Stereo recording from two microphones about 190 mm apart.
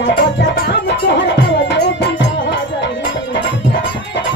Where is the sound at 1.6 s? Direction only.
65° left (ahead or behind).